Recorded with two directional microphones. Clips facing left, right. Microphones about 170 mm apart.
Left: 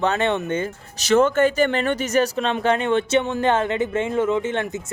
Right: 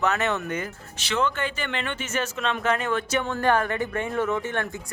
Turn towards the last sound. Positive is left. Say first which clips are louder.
# left 5 dB
turn(degrees=20)  # may be behind; listen again after turning